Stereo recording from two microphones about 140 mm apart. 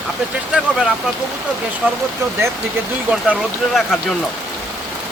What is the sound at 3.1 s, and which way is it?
Speech, centre (ahead or behind).